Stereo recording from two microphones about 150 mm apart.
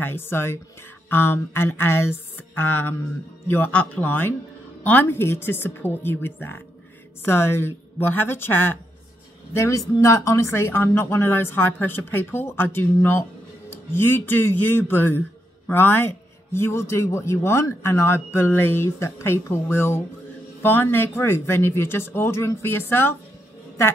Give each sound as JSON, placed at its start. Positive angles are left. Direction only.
{"t": 0.0, "sound": "speech", "side_deg": 15}